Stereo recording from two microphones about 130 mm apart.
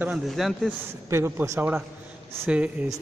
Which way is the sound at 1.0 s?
20° right (ahead or behind).